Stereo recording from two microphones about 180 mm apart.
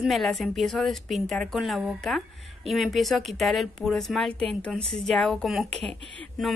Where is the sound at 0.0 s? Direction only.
Centre (ahead or behind).